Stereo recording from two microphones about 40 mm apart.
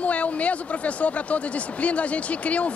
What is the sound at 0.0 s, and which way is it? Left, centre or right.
Speech, left.